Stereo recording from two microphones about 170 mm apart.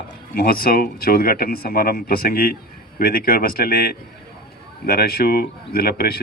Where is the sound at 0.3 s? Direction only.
60° left (ahead or behind).